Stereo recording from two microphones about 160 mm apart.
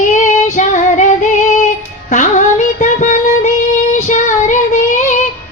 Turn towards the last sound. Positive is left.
turn(degrees=50)  # may be behind; listen again after turning